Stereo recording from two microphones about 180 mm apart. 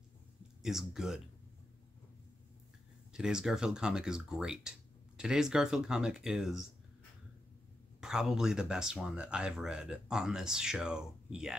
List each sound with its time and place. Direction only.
0.6 s speech: centre (ahead or behind)
3.1 s speech: 5° right (ahead or behind)
8.0 s speech: 5° right (ahead or behind)